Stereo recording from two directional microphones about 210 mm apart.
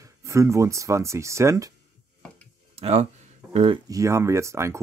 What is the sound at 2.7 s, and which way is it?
Speech, 30° right (ahead or behind).